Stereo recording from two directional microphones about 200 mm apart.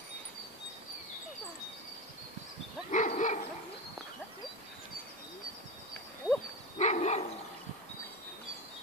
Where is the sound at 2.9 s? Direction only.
40° left (ahead or behind).